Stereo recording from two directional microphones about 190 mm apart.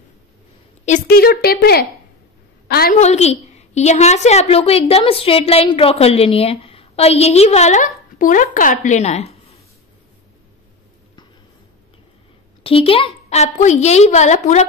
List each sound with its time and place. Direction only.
0.8 s speech: 45° left (ahead or behind)
3.0 s a woman's voice: 35° left (ahead or behind)
12.6 s a woman's voice: 30° left (ahead or behind)